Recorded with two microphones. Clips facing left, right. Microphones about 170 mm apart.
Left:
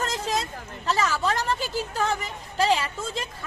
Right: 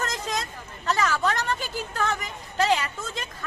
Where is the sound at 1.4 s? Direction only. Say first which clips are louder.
Left 2 dB; 30° left (ahead or behind).